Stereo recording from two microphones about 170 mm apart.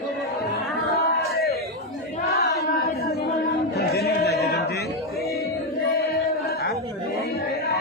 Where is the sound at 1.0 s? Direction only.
65° left (ahead or behind).